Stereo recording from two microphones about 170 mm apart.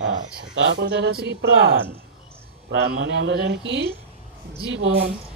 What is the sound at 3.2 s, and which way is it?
Speech, 90° right.